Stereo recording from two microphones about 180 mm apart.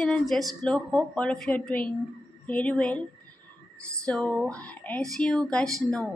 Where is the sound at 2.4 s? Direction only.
5° left (ahead or behind).